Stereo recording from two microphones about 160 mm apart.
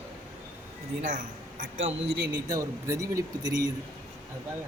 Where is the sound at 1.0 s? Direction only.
55° right (ahead or behind).